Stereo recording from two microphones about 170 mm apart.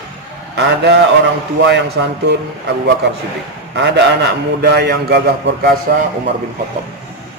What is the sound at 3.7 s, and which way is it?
A man's voice, 85° right.